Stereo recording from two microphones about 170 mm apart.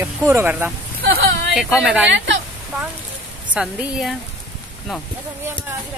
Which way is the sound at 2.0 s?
90° right.